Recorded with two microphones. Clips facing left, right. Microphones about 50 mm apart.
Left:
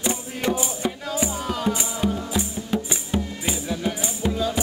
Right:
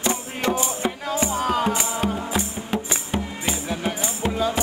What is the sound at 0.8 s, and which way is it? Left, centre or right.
Music, right.